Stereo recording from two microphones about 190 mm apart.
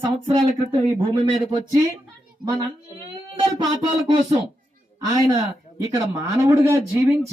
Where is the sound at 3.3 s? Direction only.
20° right (ahead or behind).